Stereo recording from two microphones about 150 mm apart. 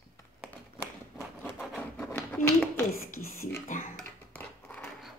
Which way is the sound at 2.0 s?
15° left (ahead or behind).